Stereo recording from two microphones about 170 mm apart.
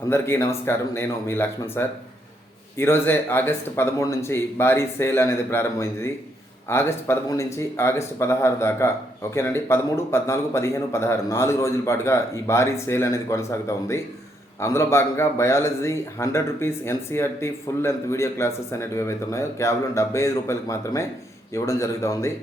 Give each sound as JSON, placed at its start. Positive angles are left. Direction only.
{"t": 0.1, "sound": "speech", "side_deg": 15}